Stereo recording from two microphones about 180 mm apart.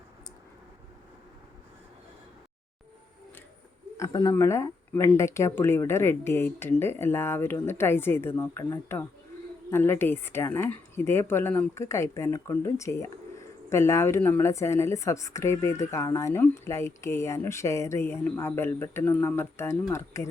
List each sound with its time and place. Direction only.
3.9 s speech: 15° left (ahead or behind)